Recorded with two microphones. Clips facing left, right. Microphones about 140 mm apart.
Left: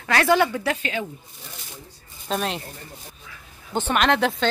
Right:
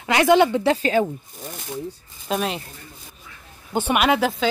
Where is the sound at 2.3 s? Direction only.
Centre (ahead or behind).